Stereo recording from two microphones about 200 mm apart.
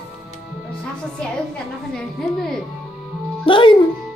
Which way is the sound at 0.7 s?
5° left (ahead or behind).